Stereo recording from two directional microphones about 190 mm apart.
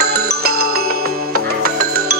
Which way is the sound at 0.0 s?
55° right (ahead or behind).